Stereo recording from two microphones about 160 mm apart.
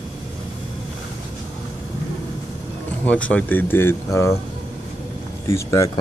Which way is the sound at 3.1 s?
10° left (ahead or behind).